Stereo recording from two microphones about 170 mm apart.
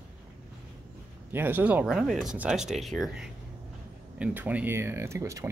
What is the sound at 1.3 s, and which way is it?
Speech, 10° right (ahead or behind).